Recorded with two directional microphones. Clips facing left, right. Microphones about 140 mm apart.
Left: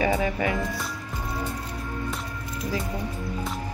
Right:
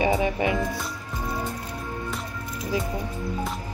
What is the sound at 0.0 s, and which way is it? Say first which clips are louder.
Music: right 1 dB; 20° right (ahead or behind).